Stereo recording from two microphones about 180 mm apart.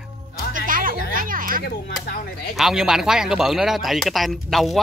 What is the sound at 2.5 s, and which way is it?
Speech, centre (ahead or behind).